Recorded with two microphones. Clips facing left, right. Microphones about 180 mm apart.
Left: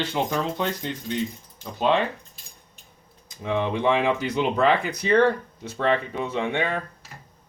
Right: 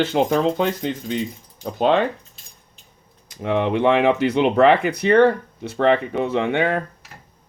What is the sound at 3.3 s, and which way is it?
Speech, 70° right (ahead or behind).